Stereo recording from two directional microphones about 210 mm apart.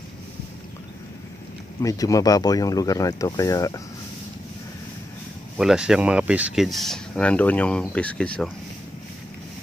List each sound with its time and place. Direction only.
1.8 s speech: 15° left (ahead or behind)
5.6 s speech: 5° right (ahead or behind)